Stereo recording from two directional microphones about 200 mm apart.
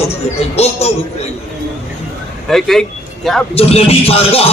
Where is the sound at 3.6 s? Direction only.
30° left (ahead or behind).